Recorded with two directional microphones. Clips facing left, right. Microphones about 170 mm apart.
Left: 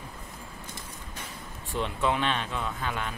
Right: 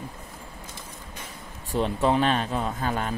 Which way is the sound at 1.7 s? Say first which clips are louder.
Right 5 dB; 40° right (ahead or behind).